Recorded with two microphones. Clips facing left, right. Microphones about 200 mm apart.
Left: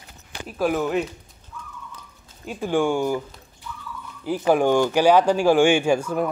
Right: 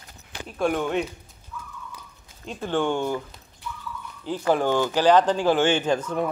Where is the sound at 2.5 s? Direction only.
10° left (ahead or behind).